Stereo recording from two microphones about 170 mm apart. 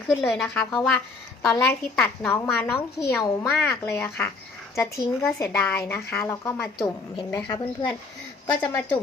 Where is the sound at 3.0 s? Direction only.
20° left (ahead or behind).